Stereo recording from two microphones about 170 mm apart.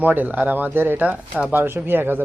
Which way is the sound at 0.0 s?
10° right (ahead or behind).